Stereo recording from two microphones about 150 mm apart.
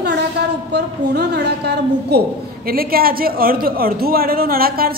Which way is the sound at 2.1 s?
90° right.